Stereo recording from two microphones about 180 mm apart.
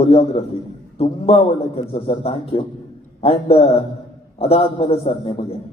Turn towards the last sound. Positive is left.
turn(degrees=30)  # may be behind; listen again after turning